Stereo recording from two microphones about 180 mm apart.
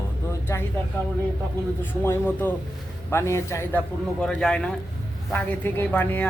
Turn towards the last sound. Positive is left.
turn(degrees=10)  # may be behind; listen again after turning